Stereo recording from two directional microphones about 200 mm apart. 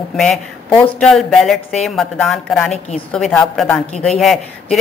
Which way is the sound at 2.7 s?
35° left (ahead or behind).